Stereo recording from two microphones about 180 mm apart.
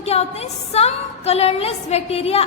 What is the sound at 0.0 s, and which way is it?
Music, 35° left (ahead or behind).